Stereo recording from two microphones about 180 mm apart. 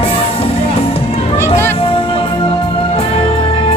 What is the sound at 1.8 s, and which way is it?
Music, 30° left (ahead or behind).